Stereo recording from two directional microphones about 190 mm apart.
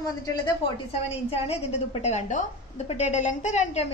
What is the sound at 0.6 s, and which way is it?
A woman's voice, 35° left (ahead or behind).